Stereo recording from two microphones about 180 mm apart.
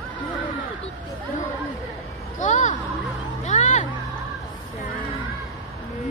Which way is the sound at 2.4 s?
40° left (ahead or behind).